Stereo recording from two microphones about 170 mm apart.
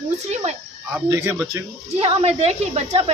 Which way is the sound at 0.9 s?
15° right (ahead or behind).